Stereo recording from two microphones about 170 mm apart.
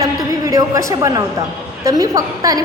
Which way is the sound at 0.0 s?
20° right (ahead or behind).